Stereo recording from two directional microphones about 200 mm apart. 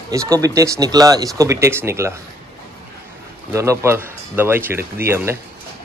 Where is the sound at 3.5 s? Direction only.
15° right (ahead or behind).